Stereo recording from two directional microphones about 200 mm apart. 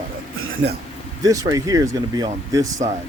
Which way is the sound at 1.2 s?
15° right (ahead or behind).